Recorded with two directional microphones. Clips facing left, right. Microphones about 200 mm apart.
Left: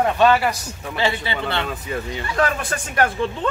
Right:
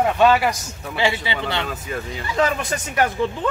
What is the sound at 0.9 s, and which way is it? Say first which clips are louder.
Speech: right 1 dB; 15° right (ahead or behind).